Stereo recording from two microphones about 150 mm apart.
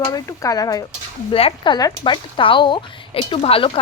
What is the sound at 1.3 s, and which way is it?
Speech, 35° left (ahead or behind).